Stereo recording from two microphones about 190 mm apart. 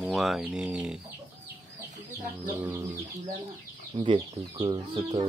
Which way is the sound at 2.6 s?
15° right (ahead or behind).